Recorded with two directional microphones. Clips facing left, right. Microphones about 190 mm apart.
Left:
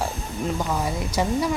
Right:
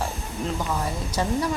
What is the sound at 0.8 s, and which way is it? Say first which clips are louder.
Speech: left 2 dB; 10° left (ahead or behind).